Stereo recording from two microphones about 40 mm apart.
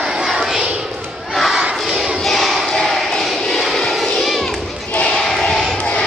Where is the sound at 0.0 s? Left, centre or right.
Centre.